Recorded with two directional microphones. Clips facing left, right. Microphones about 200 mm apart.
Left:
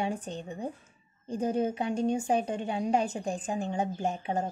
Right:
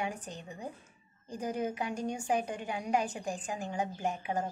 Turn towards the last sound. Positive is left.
turn(degrees=25)  # may be behind; listen again after turning